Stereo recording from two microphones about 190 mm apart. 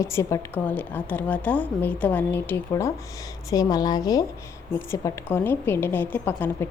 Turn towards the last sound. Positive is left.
turn(degrees=10)  # may be behind; listen again after turning